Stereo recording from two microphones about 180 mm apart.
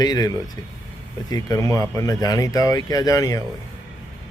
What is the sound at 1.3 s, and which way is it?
A man's voice, 20° left (ahead or behind).